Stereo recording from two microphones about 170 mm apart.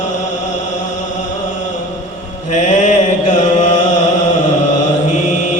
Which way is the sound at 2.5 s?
45° left (ahead or behind).